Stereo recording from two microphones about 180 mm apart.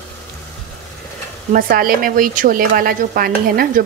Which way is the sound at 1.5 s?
55° right (ahead or behind).